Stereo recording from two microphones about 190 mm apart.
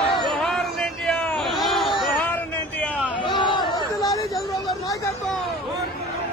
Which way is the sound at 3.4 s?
25° left (ahead or behind).